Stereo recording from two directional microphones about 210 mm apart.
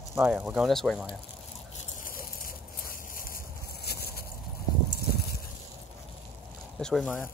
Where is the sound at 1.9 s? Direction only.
40° left (ahead or behind).